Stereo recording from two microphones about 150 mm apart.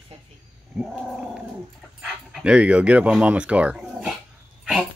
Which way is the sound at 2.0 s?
5° right (ahead or behind).